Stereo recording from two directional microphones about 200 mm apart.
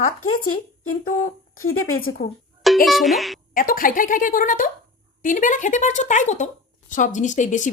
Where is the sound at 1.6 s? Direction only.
90° left.